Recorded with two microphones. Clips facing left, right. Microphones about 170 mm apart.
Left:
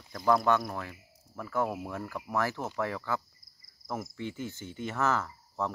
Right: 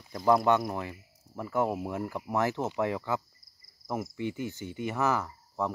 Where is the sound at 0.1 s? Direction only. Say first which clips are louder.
Right 2 dB; 15° right (ahead or behind).